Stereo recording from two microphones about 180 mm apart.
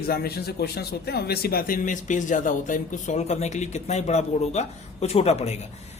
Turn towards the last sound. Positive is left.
turn(degrees=35)  # may be behind; listen again after turning